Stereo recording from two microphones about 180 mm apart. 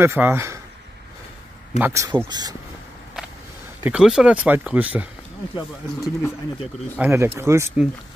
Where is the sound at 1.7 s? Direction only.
15° right (ahead or behind).